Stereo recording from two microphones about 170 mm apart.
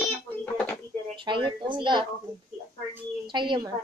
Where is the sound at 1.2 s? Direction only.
30° right (ahead or behind).